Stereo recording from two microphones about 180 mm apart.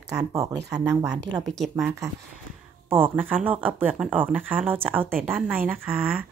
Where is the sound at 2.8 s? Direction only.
10° right (ahead or behind).